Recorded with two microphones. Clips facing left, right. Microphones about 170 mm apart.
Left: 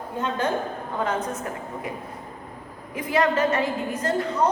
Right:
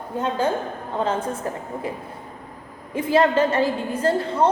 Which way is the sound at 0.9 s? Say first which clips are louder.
Right 3 dB; 30° right (ahead or behind).